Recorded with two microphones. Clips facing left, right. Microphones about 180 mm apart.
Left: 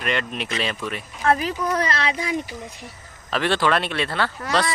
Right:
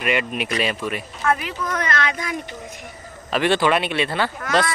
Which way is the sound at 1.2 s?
35° left (ahead or behind).